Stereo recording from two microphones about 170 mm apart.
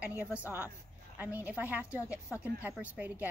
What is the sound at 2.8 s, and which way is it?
Speech, 10° right (ahead or behind).